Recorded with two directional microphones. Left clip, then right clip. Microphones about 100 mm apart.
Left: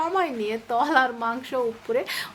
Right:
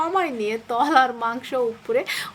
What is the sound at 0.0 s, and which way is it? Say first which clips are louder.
Speech: right 2 dB; 35° right (ahead or behind).